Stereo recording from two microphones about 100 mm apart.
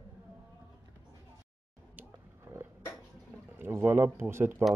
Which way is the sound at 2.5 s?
30° right (ahead or behind).